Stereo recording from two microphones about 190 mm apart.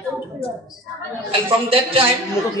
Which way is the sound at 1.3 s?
30° right (ahead or behind).